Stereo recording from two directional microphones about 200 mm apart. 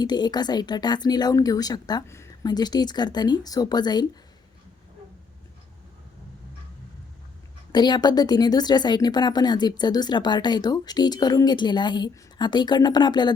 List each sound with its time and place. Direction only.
0.0 s a woman's voice: 20° left (ahead or behind)
7.7 s a woman's voice: 20° left (ahead or behind)